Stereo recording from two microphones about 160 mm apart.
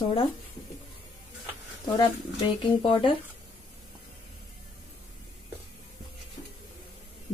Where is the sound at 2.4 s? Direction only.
30° left (ahead or behind).